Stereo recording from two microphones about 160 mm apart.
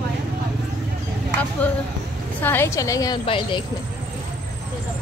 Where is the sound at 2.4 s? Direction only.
15° left (ahead or behind).